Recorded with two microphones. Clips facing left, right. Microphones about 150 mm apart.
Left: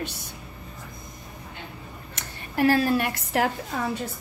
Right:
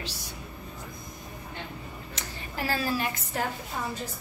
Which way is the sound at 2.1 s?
60° left (ahead or behind).